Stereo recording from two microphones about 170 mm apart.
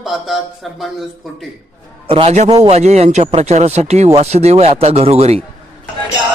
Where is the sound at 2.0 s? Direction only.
35° right (ahead or behind).